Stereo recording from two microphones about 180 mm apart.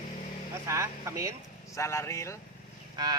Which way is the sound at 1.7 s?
15° left (ahead or behind).